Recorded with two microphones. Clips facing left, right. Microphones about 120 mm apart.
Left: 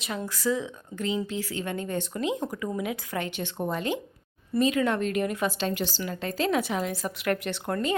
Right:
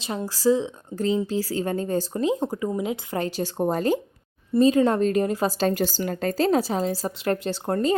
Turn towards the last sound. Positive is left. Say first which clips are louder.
# right 5 dB
turn(degrees=-35)  # may be behind; listen again after turning